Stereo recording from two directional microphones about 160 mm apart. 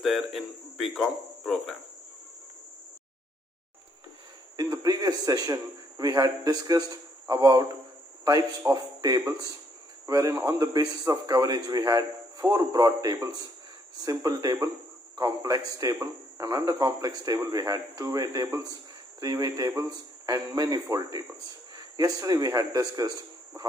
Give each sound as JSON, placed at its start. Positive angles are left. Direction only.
{"t": 0.0, "sound": "speech", "side_deg": 0}
{"t": 4.6, "sound": "a man's voice", "side_deg": -25}